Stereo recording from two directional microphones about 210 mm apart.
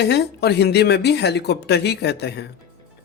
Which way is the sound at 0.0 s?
50° left (ahead or behind).